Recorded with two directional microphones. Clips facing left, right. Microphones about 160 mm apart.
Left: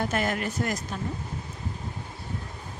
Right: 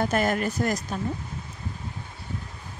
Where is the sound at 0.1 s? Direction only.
40° right (ahead or behind).